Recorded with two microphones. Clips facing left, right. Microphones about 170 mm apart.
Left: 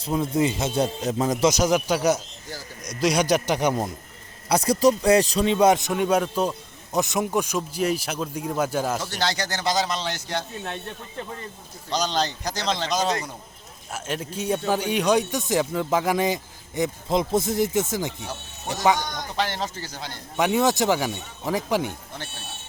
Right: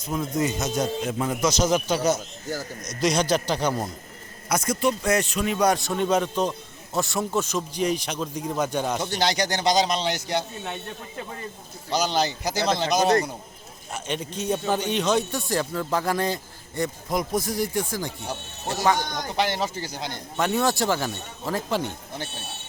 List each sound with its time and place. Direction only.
0.0 s speech: 25° left (ahead or behind)
1.5 s speech: 15° left (ahead or behind)
4.4 s speech: 35° left (ahead or behind); by 6.5 s 10° left (ahead or behind)
6.9 s speech: 20° left (ahead or behind)
9.1 s speech: 15° right (ahead or behind)
11.9 s speech: 10° right (ahead or behind)
13.9 s speech: 5° left (ahead or behind); by 18.1 s 20° left (ahead or behind)
19.4 s speech: 15° right (ahead or behind)
20.3 s speech: 15° left (ahead or behind)